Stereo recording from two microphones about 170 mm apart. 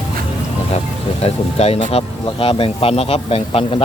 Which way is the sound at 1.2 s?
35° left (ahead or behind).